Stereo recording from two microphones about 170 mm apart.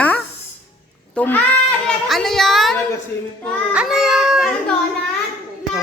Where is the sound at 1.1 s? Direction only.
10° left (ahead or behind).